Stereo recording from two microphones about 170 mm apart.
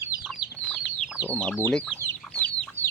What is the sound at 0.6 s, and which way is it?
Chicken, 5° left (ahead or behind).